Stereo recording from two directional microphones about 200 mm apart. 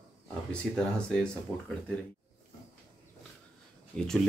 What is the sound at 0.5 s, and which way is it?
Speech, 5° left (ahead or behind).